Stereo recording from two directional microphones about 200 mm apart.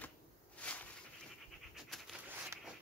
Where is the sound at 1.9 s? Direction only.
Centre (ahead or behind).